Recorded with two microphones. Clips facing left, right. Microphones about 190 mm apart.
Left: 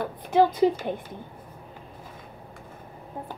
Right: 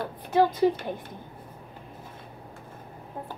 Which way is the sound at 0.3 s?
15° left (ahead or behind).